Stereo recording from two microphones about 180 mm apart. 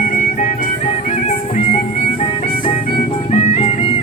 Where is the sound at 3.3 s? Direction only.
35° left (ahead or behind).